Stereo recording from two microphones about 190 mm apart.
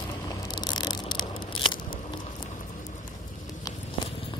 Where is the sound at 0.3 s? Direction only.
20° left (ahead or behind).